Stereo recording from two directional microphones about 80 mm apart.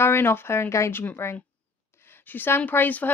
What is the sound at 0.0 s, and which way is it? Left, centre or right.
A woman's voice, left.